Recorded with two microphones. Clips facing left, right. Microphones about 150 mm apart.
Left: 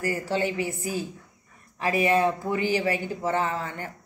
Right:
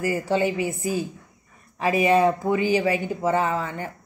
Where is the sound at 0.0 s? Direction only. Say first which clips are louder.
Right 4 dB; 15° right (ahead or behind).